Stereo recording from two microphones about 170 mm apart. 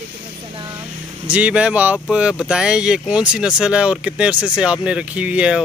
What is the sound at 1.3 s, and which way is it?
Speech, 5° right (ahead or behind).